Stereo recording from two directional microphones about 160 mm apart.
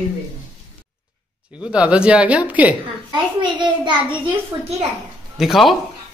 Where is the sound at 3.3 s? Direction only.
30° right (ahead or behind).